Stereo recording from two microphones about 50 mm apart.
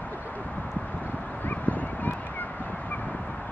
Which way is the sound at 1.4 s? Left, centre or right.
Left.